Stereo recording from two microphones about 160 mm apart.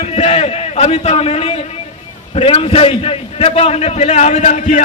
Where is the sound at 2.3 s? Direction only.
35° left (ahead or behind).